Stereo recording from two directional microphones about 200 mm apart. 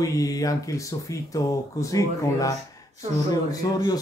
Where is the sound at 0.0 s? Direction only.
15° left (ahead or behind).